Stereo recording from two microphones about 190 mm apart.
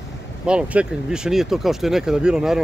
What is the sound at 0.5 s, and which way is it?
Speech, 5° right (ahead or behind).